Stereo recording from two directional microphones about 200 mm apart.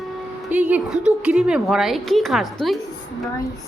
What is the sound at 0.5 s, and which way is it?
A woman's voice, 5° right (ahead or behind).